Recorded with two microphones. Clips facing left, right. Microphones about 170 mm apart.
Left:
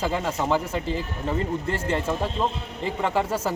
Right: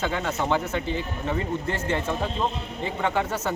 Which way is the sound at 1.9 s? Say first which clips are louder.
Left 1 dB; centre (ahead or behind).